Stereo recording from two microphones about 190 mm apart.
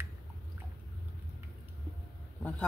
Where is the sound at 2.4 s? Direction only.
5° left (ahead or behind).